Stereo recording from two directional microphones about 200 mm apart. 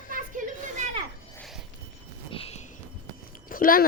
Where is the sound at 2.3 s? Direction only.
30° left (ahead or behind).